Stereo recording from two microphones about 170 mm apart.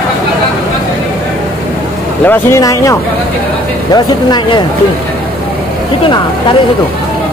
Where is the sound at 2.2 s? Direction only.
20° left (ahead or behind).